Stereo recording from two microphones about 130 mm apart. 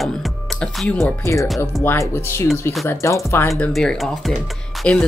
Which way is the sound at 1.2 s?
25° left (ahead or behind).